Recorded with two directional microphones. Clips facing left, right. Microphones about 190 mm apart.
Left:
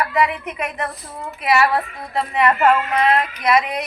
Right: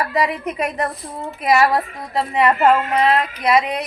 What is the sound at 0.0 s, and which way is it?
Speech, 35° right (ahead or behind).